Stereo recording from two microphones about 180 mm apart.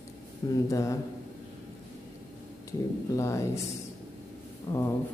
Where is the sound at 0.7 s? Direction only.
15° left (ahead or behind).